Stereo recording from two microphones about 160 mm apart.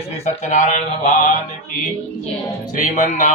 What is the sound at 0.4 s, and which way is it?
Mantra, 50° left (ahead or behind).